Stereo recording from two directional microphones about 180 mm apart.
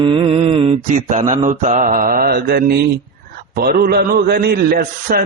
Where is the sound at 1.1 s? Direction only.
40° right (ahead or behind).